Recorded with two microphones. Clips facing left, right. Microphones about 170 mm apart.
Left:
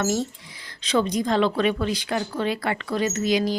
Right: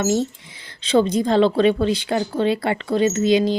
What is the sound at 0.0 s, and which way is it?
Speech, 25° right (ahead or behind).